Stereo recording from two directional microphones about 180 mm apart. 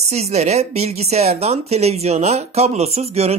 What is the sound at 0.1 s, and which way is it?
Speech, 35° right (ahead or behind).